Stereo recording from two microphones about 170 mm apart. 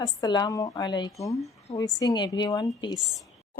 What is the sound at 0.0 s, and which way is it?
A woman's voice, 25° left (ahead or behind).